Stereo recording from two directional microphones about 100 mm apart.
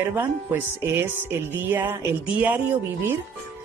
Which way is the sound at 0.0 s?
20° right (ahead or behind).